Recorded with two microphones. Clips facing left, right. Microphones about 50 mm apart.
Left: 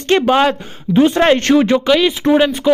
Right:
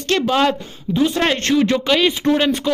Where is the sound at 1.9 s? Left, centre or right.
Centre.